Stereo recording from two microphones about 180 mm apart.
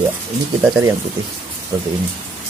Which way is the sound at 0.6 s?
10° right (ahead or behind).